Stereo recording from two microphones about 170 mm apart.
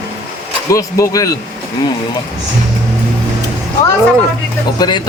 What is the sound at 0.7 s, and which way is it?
Speech, 20° left (ahead or behind).